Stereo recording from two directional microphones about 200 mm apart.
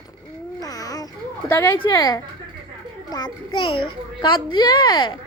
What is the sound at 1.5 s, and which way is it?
A woman's voice, 10° left (ahead or behind).